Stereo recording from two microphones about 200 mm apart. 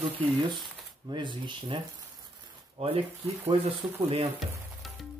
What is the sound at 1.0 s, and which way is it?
Speech, 25° right (ahead or behind).